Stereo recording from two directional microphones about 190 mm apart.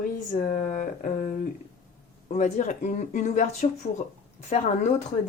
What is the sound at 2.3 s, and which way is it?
Speech, 40° left (ahead or behind).